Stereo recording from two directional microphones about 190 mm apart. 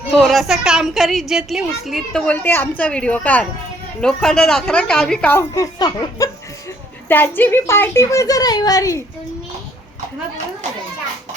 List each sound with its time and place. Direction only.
0.2 s a woman's voice: centre (ahead or behind); by 9.0 s 15° left (ahead or behind)